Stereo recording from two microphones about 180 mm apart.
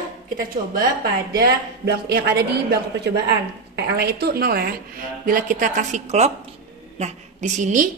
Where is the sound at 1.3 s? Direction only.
65° right (ahead or behind).